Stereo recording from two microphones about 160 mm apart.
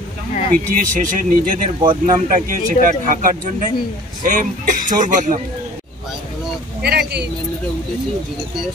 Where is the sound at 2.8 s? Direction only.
55° right (ahead or behind).